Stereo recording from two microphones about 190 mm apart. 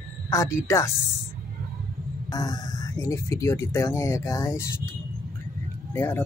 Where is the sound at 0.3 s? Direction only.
15° left (ahead or behind).